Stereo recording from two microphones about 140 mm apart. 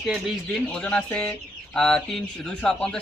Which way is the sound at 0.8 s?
10° left (ahead or behind).